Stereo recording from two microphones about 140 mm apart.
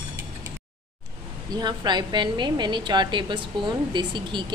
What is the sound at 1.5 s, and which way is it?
A woman's voice, 30° right (ahead or behind).